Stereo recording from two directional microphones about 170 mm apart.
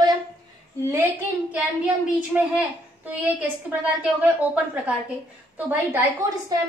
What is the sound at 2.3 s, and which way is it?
A woman's voice, 10° right (ahead or behind).